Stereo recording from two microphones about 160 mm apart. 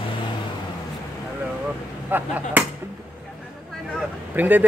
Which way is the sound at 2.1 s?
10° right (ahead or behind).